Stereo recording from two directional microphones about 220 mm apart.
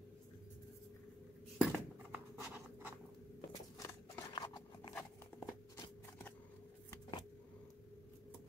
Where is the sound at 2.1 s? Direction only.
5° right (ahead or behind).